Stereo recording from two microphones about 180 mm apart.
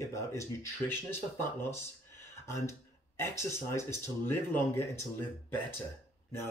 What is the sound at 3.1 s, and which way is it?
Speech, 15° left (ahead or behind).